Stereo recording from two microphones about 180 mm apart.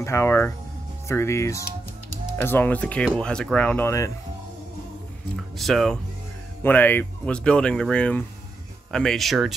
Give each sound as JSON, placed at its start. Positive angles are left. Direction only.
{"t": 0.0, "sound": "speech", "side_deg": 15}
{"t": 5.3, "sound": "speech", "side_deg": 0}